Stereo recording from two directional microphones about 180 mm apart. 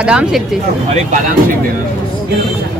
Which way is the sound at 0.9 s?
45° right (ahead or behind).